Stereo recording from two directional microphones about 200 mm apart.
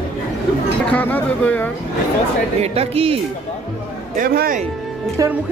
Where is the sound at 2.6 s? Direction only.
30° right (ahead or behind).